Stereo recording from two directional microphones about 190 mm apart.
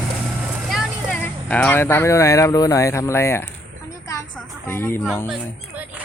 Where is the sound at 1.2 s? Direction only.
10° left (ahead or behind).